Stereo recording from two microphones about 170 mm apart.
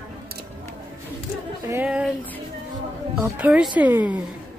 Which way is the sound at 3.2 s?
10° right (ahead or behind).